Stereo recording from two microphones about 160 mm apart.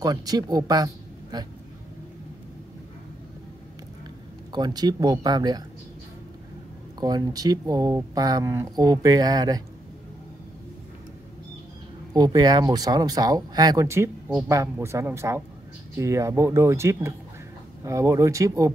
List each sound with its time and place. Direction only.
0.0 s speech: 25° right (ahead or behind)
4.5 s speech: 25° right (ahead or behind)
7.0 s speech: 25° right (ahead or behind)
12.1 s speech: 25° right (ahead or behind)